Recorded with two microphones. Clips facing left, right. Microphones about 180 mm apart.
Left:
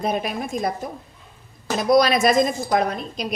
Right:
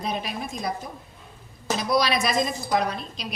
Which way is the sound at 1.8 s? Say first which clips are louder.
Left 7 dB; 50° left (ahead or behind).